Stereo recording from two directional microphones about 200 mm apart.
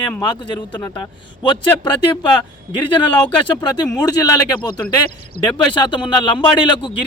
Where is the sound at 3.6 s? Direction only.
20° left (ahead or behind).